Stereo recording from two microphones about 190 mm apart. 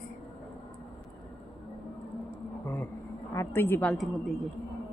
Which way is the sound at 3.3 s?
15° left (ahead or behind).